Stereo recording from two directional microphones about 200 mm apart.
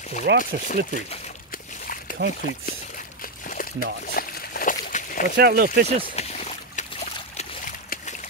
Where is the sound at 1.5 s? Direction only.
45° left (ahead or behind).